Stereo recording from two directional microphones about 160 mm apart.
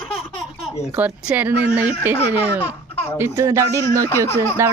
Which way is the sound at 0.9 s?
10° right (ahead or behind).